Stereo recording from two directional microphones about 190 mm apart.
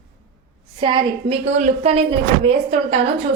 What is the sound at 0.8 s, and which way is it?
A woman's voice, 25° right (ahead or behind).